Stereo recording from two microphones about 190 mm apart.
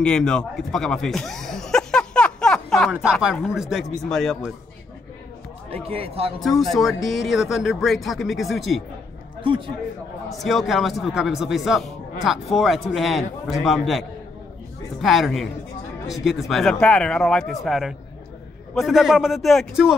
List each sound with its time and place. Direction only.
0.0 s speech: 5° left (ahead or behind)
5.9 s speech: 30° right (ahead or behind)
6.6 s speech: centre (ahead or behind)
10.3 s a man's voice: centre (ahead or behind)